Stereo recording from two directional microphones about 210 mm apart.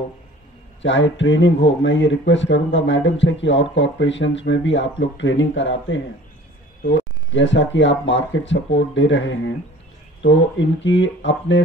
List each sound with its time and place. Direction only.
0.8 s speech: 60° left (ahead or behind)